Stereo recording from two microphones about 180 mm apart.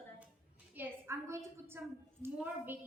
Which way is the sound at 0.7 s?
10° right (ahead or behind).